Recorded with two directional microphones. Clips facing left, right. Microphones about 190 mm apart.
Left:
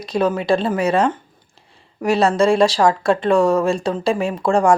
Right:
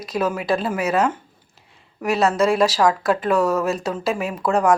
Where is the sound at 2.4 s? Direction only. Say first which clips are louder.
Left 3 dB; 30° left (ahead or behind).